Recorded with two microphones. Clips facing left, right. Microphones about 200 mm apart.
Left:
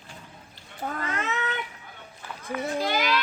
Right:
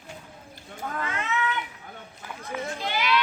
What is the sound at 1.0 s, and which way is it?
Cat, 40° left (ahead or behind).